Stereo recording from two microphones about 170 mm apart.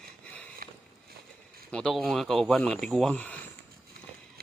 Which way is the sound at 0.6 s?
60° right (ahead or behind).